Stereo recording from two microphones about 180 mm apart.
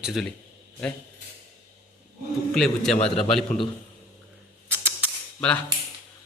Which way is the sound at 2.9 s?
35° left (ahead or behind).